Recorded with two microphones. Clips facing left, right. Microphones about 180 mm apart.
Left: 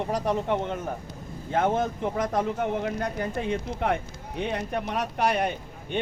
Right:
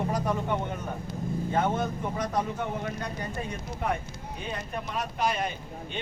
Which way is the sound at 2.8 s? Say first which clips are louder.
Left 5 dB; 65° left (ahead or behind).